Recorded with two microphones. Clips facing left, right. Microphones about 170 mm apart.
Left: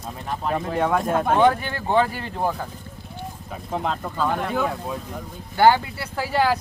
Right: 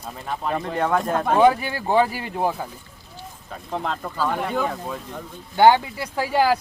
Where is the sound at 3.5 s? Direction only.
5° left (ahead or behind).